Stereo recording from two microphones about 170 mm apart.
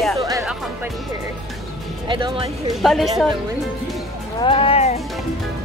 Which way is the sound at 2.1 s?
30° right (ahead or behind).